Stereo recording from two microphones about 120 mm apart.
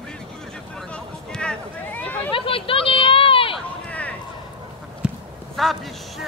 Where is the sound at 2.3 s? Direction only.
50° left (ahead or behind).